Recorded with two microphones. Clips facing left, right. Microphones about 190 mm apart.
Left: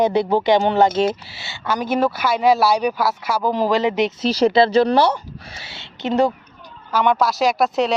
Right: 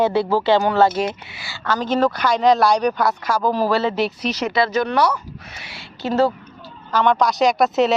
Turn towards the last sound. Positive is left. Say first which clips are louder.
# right 2 dB
turn(degrees=0)  # may be behind; listen again after turning